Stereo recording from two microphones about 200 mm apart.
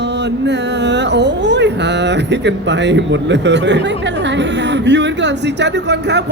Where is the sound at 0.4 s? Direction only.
60° right (ahead or behind).